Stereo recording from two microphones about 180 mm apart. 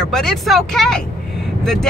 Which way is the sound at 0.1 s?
Centre (ahead or behind).